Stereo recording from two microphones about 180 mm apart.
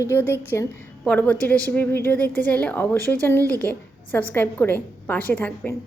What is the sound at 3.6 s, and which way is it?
A woman's voice, 10° left (ahead or behind).